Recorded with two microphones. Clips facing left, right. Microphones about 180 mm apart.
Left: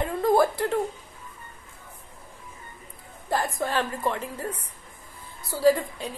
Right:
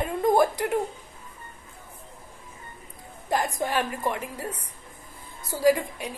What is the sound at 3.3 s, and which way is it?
A woman's voice, 15° right (ahead or behind).